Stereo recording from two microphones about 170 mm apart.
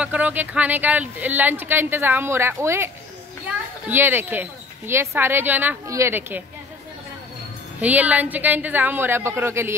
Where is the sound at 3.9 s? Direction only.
10° right (ahead or behind).